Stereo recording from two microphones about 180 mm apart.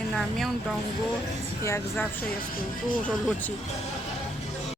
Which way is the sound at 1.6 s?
15° left (ahead or behind).